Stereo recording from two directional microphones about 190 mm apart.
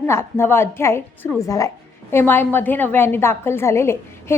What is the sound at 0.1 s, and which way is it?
A woman's voice, 15° left (ahead or behind).